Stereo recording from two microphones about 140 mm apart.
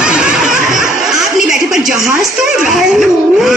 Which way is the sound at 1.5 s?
5° right (ahead or behind).